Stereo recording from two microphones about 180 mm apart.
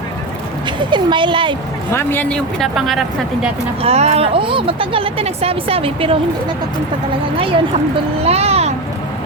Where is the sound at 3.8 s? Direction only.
35° right (ahead or behind).